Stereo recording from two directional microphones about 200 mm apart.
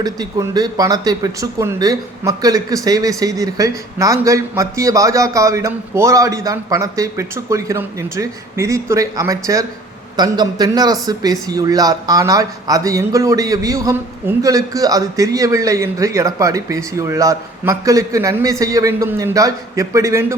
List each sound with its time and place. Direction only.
0.0 s speech: 20° right (ahead or behind)